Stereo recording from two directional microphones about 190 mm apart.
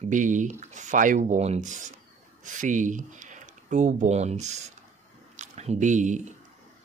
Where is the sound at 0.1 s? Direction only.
40° right (ahead or behind).